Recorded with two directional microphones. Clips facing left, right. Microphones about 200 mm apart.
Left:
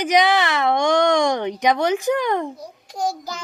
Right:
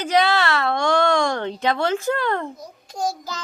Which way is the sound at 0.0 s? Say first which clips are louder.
Left 2 dB; 15° left (ahead or behind).